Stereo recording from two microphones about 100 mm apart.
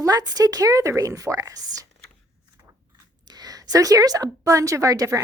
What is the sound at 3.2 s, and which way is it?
A woman's voice, 40° right (ahead or behind).